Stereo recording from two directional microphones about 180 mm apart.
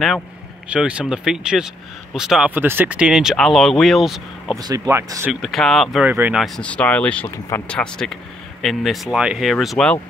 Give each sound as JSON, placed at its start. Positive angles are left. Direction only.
{"t": 0.7, "sound": "speech", "side_deg": -5}
{"t": 4.6, "sound": "speech", "side_deg": -20}
{"t": 5.3, "sound": "speech", "side_deg": 0}
{"t": 6.0, "sound": "speech", "side_deg": -10}
{"t": 6.4, "sound": "speech", "side_deg": 5}